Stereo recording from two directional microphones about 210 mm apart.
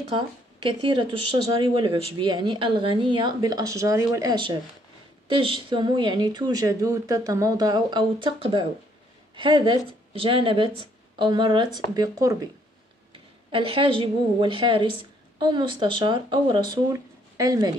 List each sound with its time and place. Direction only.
0.7 s a woman's voice: 25° right (ahead or behind)